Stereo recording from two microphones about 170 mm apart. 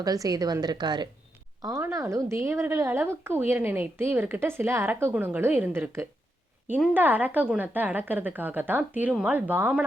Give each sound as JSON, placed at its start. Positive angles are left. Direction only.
{"t": 0.0, "sound": "a woman's voice", "side_deg": -20}